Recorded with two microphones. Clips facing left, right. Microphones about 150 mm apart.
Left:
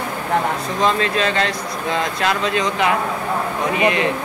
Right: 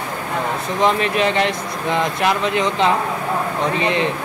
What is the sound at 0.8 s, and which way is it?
Speech, 20° right (ahead or behind).